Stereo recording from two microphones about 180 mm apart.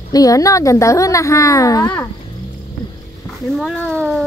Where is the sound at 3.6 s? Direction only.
5° left (ahead or behind).